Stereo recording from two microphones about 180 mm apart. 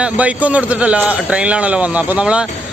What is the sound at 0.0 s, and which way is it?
A man's voice, 10° right (ahead or behind).